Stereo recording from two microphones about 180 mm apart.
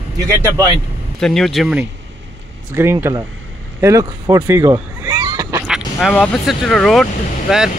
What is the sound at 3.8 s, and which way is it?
Cat, 20° right (ahead or behind).